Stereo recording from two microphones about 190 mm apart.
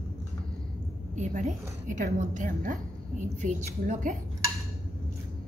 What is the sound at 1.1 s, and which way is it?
A woman's voice, 40° right (ahead or behind).